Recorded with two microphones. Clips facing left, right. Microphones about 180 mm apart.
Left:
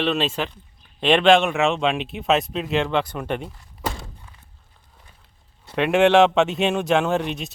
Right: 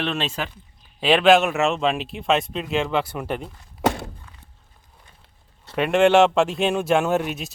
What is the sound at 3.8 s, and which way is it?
Walk, 65° right (ahead or behind).